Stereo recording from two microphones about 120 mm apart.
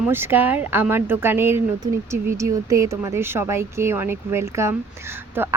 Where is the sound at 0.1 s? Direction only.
20° right (ahead or behind).